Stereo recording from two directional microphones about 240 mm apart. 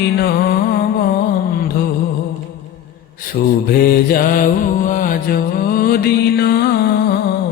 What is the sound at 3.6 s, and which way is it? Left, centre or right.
Mantra, left.